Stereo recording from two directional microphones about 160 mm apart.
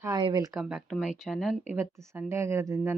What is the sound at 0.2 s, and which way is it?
Speech, 30° right (ahead or behind).